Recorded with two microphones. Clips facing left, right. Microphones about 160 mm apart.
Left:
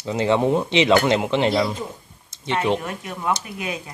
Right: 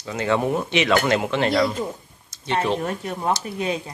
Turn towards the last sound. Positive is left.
turn(degrees=-30)  # may be behind; listen again after turning